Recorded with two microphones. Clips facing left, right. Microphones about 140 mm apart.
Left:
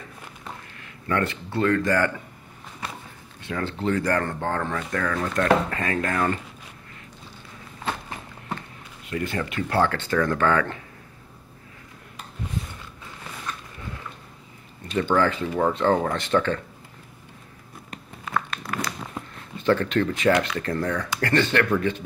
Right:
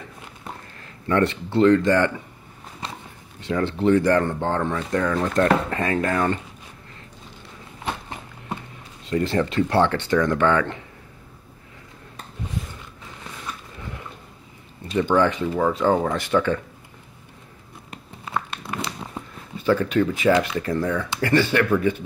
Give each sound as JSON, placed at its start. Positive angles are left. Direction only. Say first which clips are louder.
{"t": 0.7, "sound": "speech", "louder": "right 5 dB", "side_deg": -30}
{"t": 3.3, "sound": "speech", "louder": "right 6 dB", "side_deg": -20}
{"t": 9.1, "sound": "speech", "louder": "right 6 dB", "side_deg": -30}
{"t": 15.1, "sound": "speech", "louder": "right 3 dB", "side_deg": -15}
{"t": 15.5, "sound": "speech", "louder": "right 1 dB", "side_deg": 0}
{"t": 15.8, "sound": "speech", "louder": "right 1 dB", "side_deg": -10}
{"t": 17.9, "sound": "a sound", "louder": "even", "side_deg": -25}
{"t": 19.1, "sound": "a sound", "louder": "right 1 dB", "side_deg": -10}
{"t": 20.3, "sound": "speech", "louder": "right 2 dB", "side_deg": -15}